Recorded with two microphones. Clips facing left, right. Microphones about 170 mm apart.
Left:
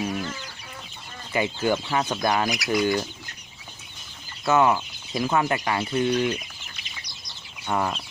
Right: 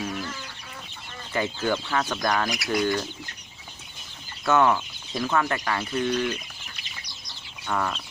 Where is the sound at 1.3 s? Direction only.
10° left (ahead or behind).